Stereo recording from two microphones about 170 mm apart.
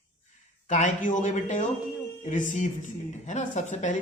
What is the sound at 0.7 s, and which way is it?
A woman's voice, 45° left (ahead or behind).